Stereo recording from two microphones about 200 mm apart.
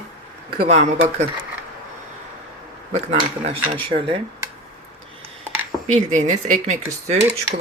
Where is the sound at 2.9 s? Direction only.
35° right (ahead or behind).